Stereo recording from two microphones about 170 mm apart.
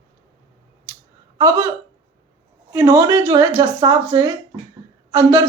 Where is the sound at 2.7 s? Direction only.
15° right (ahead or behind).